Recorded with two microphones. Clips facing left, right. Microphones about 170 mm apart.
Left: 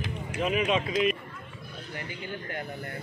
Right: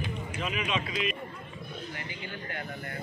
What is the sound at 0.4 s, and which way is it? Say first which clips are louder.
Speech: left 7 dB; 45° left (ahead or behind).